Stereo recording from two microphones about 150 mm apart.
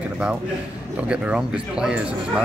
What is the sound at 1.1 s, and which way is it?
Speech, 5° right (ahead or behind).